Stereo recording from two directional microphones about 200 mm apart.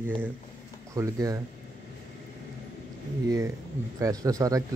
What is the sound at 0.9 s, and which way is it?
Speech, 15° right (ahead or behind).